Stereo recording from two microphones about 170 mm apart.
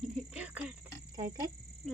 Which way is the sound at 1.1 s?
20° right (ahead or behind).